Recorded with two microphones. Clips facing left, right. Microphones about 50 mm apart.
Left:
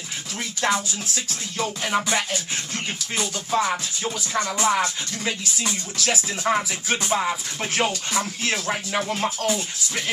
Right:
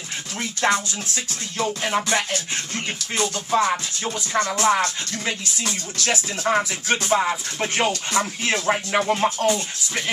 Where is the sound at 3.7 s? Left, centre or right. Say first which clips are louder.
Right 1 dB; centre.